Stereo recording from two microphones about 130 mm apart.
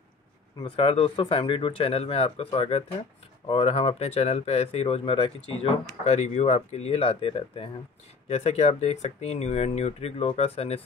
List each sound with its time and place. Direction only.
0.6 s speech: 45° left (ahead or behind)
8.3 s speech: 55° left (ahead or behind)